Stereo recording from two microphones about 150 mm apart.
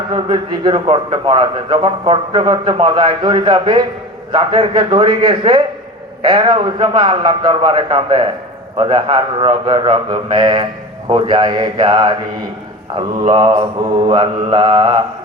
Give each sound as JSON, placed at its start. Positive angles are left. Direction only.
{"t": 0.1, "sound": "a man's voice", "side_deg": -30}